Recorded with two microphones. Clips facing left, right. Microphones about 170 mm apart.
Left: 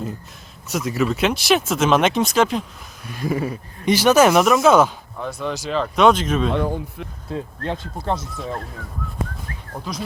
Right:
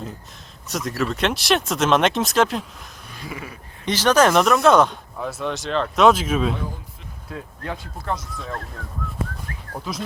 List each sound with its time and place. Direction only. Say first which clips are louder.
0.7 s speech: left 3 dB; centre (ahead or behind)
3.2 s speech: left 12 dB; 40° left (ahead or behind)
3.8 s speech: left 3 dB; 10° left (ahead or behind); by 6.5 s 5° right (ahead or behind)
6.5 s speech: left 8 dB; 70° left (ahead or behind)
7.3 s speech: left 5 dB; 25° left (ahead or behind)